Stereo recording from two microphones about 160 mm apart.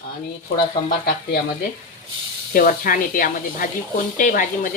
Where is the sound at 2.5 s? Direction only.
60° left (ahead or behind).